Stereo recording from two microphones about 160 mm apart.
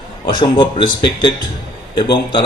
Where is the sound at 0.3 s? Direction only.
30° left (ahead or behind).